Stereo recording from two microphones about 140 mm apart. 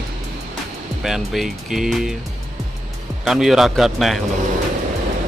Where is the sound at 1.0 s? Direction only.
Centre (ahead or behind).